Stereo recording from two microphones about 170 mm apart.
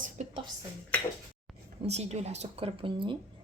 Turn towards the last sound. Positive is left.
turn(degrees=-30)  # may be behind; listen again after turning